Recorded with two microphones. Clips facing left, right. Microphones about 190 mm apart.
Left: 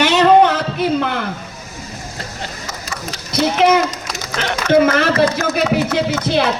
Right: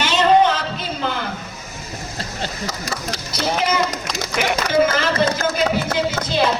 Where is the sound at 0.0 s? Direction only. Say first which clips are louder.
Left 4 dB; 65° left (ahead or behind).